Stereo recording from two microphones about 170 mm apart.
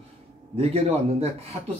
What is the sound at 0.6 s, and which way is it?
Speech, 35° right (ahead or behind).